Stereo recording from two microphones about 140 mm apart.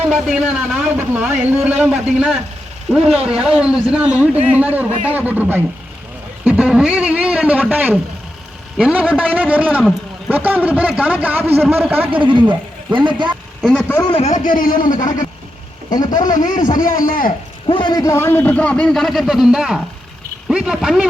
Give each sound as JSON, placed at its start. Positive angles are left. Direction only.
{"t": 0.1, "sound": "a man's voice", "side_deg": -5}
{"t": 12.1, "sound": "a man's voice", "side_deg": -35}
{"t": 13.6, "sound": "a man's voice", "side_deg": 5}
{"t": 14.4, "sound": "a man's voice", "side_deg": 75}
{"t": 15.9, "sound": "speech", "side_deg": 30}
{"t": 16.3, "sound": "a man's voice", "side_deg": 70}
{"t": 17.7, "sound": "a man's voice", "side_deg": 35}